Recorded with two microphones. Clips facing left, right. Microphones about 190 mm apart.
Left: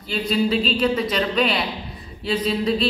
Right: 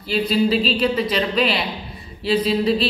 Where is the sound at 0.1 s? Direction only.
5° right (ahead or behind).